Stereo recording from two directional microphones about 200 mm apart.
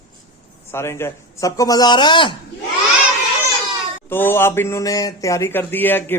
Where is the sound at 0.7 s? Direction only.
10° left (ahead or behind).